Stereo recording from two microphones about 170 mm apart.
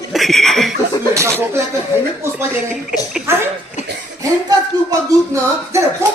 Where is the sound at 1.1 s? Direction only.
15° right (ahead or behind).